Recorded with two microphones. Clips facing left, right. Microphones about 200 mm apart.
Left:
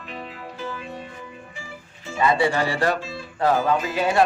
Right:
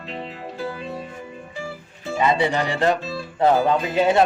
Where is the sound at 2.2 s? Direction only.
20° right (ahead or behind).